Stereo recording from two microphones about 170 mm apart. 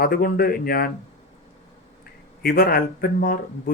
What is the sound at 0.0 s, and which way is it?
Speech, 60° left (ahead or behind).